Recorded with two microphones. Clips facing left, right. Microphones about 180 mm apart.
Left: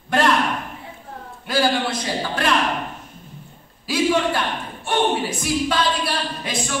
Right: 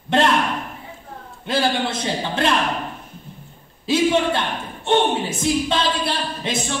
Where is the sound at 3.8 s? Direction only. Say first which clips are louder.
Right 2 dB; 25° right (ahead or behind).